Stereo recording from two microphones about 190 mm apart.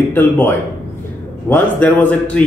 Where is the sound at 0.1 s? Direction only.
10° left (ahead or behind).